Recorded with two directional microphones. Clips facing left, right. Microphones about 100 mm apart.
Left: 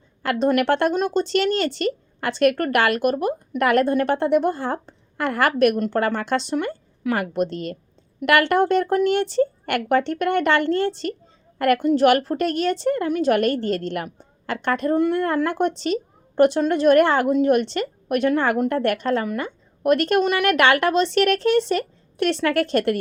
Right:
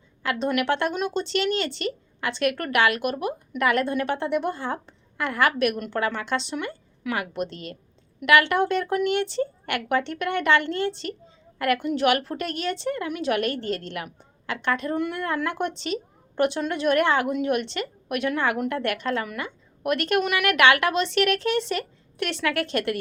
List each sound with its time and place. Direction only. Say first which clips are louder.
0.2 s a woman's voice: left 5 dB; 45° left (ahead or behind)